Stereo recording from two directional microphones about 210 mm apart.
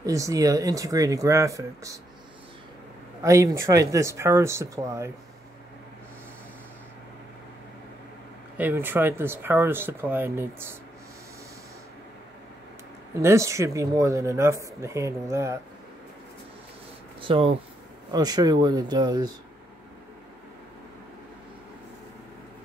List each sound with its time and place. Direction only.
0.0 s speech: 15° right (ahead or behind)
3.2 s speech: 15° right (ahead or behind)
8.5 s speech: 10° right (ahead or behind)
13.2 s speech: 15° right (ahead or behind)
17.2 s speech: 25° right (ahead or behind)